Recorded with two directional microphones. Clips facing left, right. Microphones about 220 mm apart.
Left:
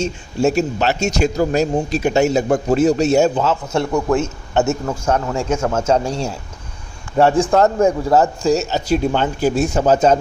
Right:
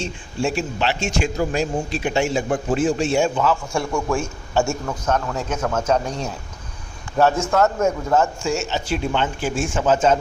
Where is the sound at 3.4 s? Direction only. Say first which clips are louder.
Left 3 dB; 25° left (ahead or behind).